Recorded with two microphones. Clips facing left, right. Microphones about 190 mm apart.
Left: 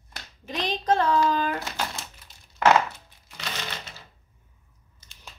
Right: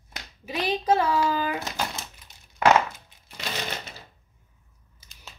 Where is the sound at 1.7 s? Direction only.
20° right (ahead or behind).